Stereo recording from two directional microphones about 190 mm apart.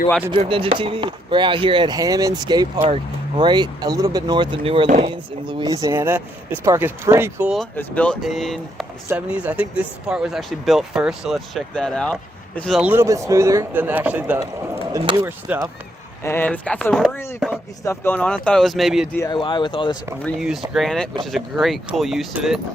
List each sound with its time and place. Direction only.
0.3 s speech: 30° right (ahead or behind); by 7.7 s 5° right (ahead or behind)
7.8 s speech: 5° left (ahead or behind)
12.9 s speech: 15° right (ahead or behind)
14.9 s speech: 20° right (ahead or behind)
15.5 s speech: 5° right (ahead or behind)
16.2 s speech: 10° left (ahead or behind)
19.3 s speech: 25° left (ahead or behind)
20.4 s speech: centre (ahead or behind)